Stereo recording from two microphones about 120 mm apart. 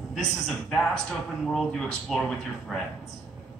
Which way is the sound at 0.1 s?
5° left (ahead or behind).